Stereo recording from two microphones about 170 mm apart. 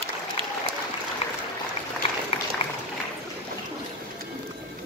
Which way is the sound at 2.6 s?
30° left (ahead or behind).